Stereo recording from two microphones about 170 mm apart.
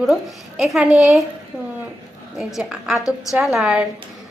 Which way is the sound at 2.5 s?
Centre (ahead or behind).